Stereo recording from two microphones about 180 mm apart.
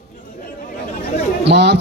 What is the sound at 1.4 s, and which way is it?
Speech, 70° right (ahead or behind).